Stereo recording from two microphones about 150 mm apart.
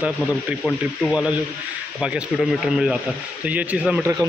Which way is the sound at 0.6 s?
5° left (ahead or behind).